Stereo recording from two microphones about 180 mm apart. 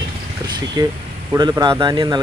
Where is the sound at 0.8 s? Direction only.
20° right (ahead or behind).